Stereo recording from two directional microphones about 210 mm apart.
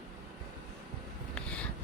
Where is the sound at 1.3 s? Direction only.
5° left (ahead or behind).